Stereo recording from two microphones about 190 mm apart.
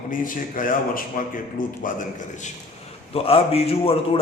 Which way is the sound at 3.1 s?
30° left (ahead or behind).